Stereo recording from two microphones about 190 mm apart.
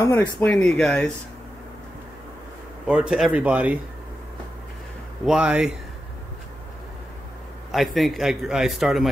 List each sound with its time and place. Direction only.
0.0 s a man's voice: 10° left (ahead or behind)
2.9 s speech: 5° right (ahead or behind)
5.2 s a man's voice: 5° right (ahead or behind)
7.7 s a man's voice: centre (ahead or behind)